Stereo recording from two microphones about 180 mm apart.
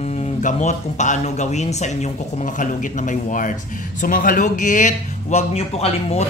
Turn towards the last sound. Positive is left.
turn(degrees=35)  # may be behind; listen again after turning